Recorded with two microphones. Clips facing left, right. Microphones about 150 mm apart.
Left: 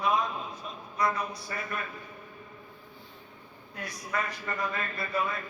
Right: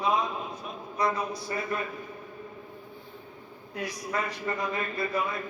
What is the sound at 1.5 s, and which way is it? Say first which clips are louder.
Speech: right 8 dB; 25° right (ahead or behind).